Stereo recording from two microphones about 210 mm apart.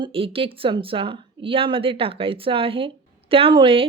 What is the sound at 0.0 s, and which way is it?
Speech, 25° right (ahead or behind).